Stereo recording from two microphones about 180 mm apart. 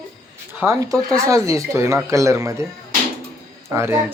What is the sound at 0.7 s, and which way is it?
Speech, 15° right (ahead or behind).